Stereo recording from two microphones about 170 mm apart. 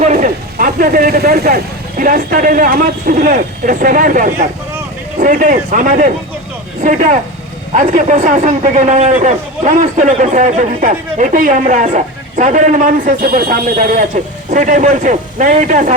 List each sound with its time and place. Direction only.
0.0 s a woman's voice: 45° right (ahead or behind)
7.7 s a woman's voice: 45° right (ahead or behind)